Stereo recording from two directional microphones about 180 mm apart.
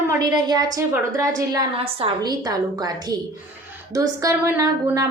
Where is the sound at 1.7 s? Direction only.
30° right (ahead or behind).